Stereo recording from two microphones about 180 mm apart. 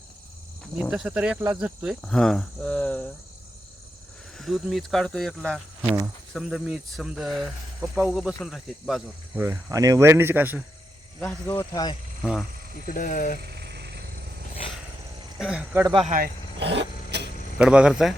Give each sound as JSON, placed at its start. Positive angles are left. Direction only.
{"t": 0.8, "sound": "speech", "side_deg": -5}
{"t": 4.4, "sound": "speech", "side_deg": 0}
{"t": 9.4, "sound": "speech", "side_deg": -15}
{"t": 11.2, "sound": "speech", "side_deg": 10}
{"t": 12.2, "sound": "speech", "side_deg": -5}
{"t": 12.8, "sound": "speech", "side_deg": 50}
{"t": 13.6, "sound": "frog", "side_deg": -65}
{"t": 15.4, "sound": "speech", "side_deg": -5}
{"t": 16.0, "sound": "speech", "side_deg": -50}
{"t": 16.6, "sound": "vehicle", "side_deg": -70}
{"t": 17.6, "sound": "speech", "side_deg": -5}